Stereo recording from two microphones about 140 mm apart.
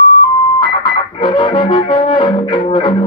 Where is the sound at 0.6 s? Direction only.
35° left (ahead or behind).